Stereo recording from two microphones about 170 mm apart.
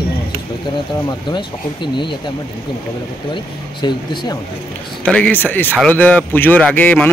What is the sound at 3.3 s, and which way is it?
Speech, 25° left (ahead or behind).